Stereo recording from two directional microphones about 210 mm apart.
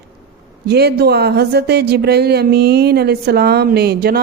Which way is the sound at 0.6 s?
50° right (ahead or behind).